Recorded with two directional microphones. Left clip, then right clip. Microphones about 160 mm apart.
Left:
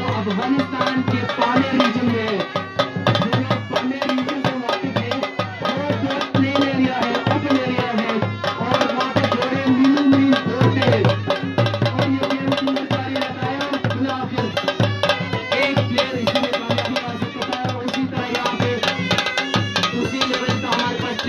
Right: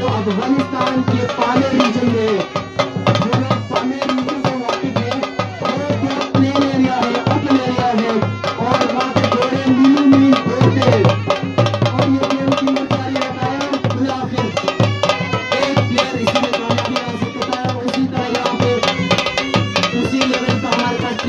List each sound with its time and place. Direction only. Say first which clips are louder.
0.3 s music: right 3 dB; 30° left (ahead or behind)
2.8 s music: right 3 dB; 30° left (ahead or behind)
6.3 s music: right 4 dB; 30° left (ahead or behind)
14.8 s music: right 4 dB; 30° left (ahead or behind)
18.6 s music: right 5 dB; 5° right (ahead or behind)